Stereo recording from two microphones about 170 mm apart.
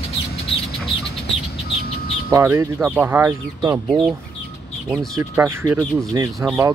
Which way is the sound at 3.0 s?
15° right (ahead or behind).